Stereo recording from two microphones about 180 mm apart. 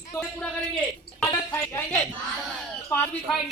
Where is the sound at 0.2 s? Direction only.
5° left (ahead or behind).